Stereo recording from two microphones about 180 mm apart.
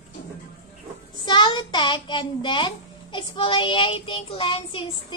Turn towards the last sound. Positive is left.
turn(degrees=30)  # may be behind; listen again after turning